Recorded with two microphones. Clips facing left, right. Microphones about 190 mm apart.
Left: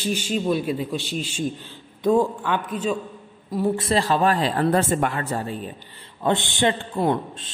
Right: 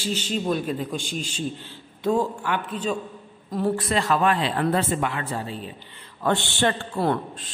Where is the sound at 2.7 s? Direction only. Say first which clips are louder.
Left 2 dB; 10° left (ahead or behind).